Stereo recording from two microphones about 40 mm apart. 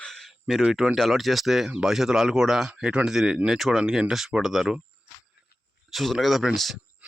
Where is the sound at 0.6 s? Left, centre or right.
Centre.